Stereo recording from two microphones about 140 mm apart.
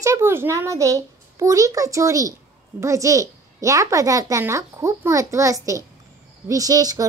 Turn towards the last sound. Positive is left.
turn(degrees=-25)  # may be behind; listen again after turning